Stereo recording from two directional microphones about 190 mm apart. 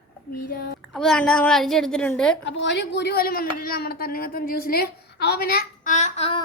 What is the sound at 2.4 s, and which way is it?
Speech, 70° left (ahead or behind).